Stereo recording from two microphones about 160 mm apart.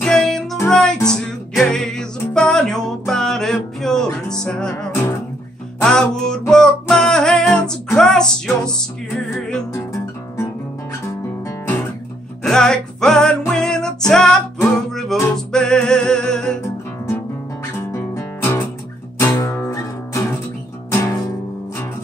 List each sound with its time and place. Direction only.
0.0 s music: 5° left (ahead or behind)
11.4 s guitar: 15° left (ahead or behind)
12.4 s music: 5° left (ahead or behind)
17.7 s guitar: 15° left (ahead or behind)
19.1 s music: 20° left (ahead or behind)